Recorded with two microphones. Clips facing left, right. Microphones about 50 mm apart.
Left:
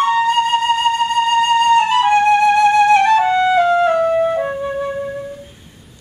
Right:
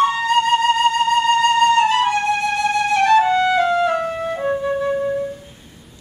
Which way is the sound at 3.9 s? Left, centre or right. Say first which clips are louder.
Left 6 dB; centre.